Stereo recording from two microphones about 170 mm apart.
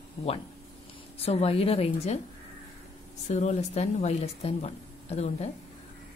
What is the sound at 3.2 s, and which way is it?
Speech, 40° left (ahead or behind).